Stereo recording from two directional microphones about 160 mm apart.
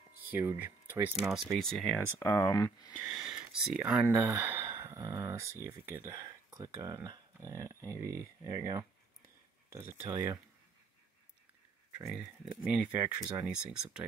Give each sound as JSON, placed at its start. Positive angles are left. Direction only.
{"t": 0.3, "sound": "speech", "side_deg": -10}
{"t": 1.1, "sound": "speech", "side_deg": 0}
{"t": 2.5, "sound": "speech", "side_deg": 25}
{"t": 2.9, "sound": "speech", "side_deg": 0}
{"t": 4.1, "sound": "speech", "side_deg": -15}
{"t": 10.1, "sound": "speech", "side_deg": -25}
{"t": 12.1, "sound": "speech", "side_deg": -5}